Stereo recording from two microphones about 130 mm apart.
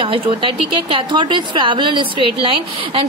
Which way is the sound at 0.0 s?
40° right (ahead or behind).